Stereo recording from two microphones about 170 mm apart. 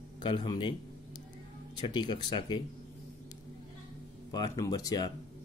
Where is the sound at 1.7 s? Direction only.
25° left (ahead or behind).